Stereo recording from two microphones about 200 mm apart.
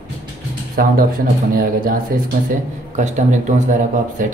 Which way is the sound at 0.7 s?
45° right (ahead or behind).